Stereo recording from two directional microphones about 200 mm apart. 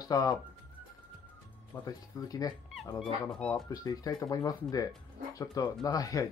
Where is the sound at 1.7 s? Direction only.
20° left (ahead or behind).